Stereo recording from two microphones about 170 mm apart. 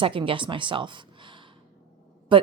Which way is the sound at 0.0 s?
30° right (ahead or behind).